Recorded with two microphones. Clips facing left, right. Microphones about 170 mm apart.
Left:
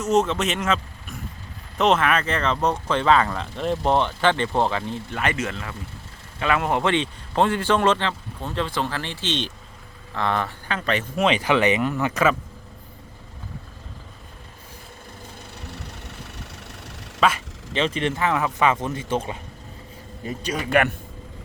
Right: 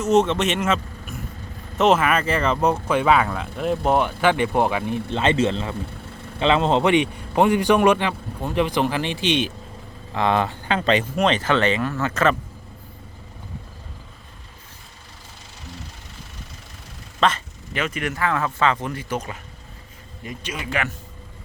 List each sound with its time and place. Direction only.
0.0 s speech: centre (ahead or behind)
5.0 s a man's voice: 25° right (ahead or behind)
11.2 s speech: 10° left (ahead or behind)
15.6 s vehicle: 65° left (ahead or behind)
17.2 s speech: 10° left (ahead or behind)
17.7 s speech: 30° left (ahead or behind)
20.2 s speech: 35° left (ahead or behind)
20.7 s speech: 60° left (ahead or behind)